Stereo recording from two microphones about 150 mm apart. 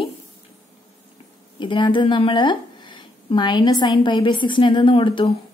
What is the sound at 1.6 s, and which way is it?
A woman's voice, 35° left (ahead or behind).